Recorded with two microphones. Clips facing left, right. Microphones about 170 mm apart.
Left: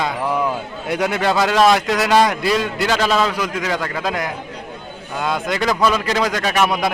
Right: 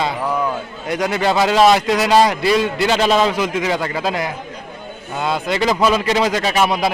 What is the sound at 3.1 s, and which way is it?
Speech, 20° right (ahead or behind).